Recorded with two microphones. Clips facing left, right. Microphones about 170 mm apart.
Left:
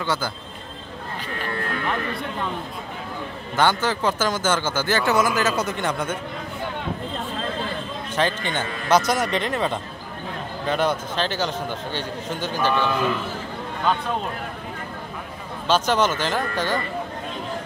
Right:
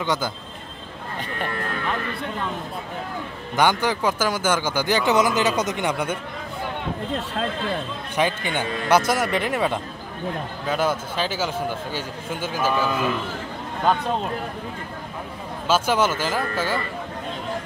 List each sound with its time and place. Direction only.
0.0 s speech: 20° right (ahead or behind)
3.5 s speech: 15° right (ahead or behind)
8.2 s speech: 10° right (ahead or behind)
13.9 s speech: 45° right (ahead or behind)
15.7 s speech: 10° right (ahead or behind)